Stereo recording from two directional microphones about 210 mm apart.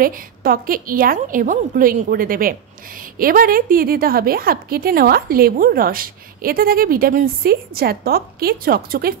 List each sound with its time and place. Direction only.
0.0 s a woman's voice: 40° right (ahead or behind)